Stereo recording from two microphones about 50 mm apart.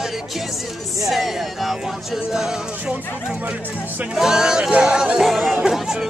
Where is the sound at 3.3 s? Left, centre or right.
Right.